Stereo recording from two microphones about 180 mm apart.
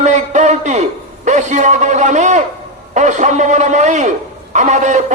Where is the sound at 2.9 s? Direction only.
40° right (ahead or behind).